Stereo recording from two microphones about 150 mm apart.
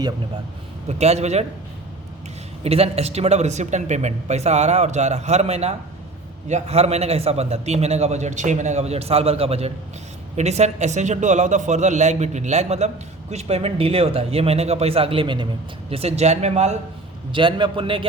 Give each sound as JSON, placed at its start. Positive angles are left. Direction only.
{"t": 0.9, "sound": "a man's voice", "side_deg": -45}
{"t": 2.6, "sound": "a man's voice", "side_deg": -40}
{"t": 17.3, "sound": "a man's voice", "side_deg": -35}